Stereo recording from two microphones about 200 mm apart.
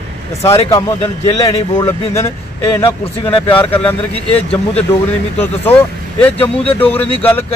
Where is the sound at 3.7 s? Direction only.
10° left (ahead or behind).